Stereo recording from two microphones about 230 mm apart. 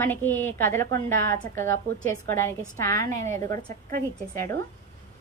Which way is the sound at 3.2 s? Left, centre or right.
Right.